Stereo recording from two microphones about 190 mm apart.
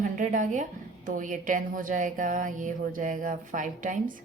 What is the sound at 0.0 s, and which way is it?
A woman's voice, 40° right (ahead or behind).